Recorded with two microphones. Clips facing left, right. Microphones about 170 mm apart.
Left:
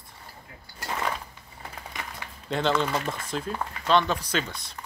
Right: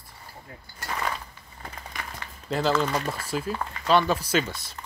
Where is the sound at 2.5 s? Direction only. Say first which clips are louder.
Right 1 dB; 5° right (ahead or behind).